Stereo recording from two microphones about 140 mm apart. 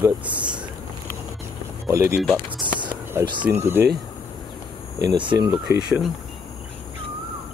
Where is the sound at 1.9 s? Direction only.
20° right (ahead or behind).